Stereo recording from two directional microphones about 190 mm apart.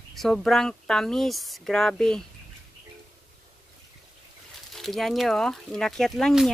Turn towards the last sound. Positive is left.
turn(degrees=0)  # may be behind; listen again after turning